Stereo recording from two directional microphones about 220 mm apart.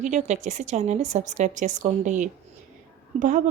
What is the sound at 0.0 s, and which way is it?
Speech, 35° right (ahead or behind).